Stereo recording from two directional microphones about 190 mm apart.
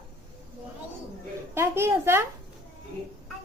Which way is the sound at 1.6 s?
15° right (ahead or behind).